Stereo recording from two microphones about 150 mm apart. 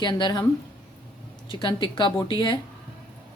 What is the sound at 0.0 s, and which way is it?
Speech, 30° left (ahead or behind).